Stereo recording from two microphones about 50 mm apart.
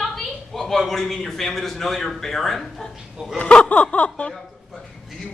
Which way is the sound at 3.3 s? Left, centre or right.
Left.